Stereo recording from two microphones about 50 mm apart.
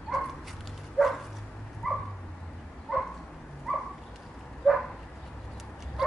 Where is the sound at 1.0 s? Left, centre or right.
Centre.